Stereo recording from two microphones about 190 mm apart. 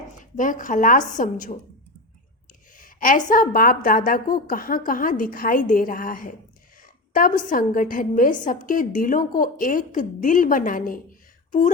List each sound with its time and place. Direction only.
0.2 s a woman's voice: 45° left (ahead or behind)
2.7 s a woman's voice: 45° left (ahead or behind)